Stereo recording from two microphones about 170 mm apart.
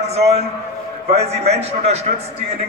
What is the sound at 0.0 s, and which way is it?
A man's voice, 40° right (ahead or behind).